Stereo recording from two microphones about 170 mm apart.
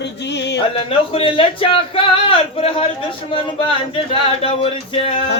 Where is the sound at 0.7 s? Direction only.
35° left (ahead or behind).